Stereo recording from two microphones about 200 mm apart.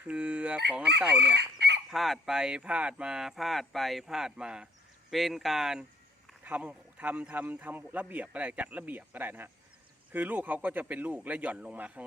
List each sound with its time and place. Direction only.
0.0 s fowl: 5° right (ahead or behind)
0.9 s speech: 5° right (ahead or behind)
1.4 s chicken: 60° right (ahead or behind)
1.9 s speech: centre (ahead or behind)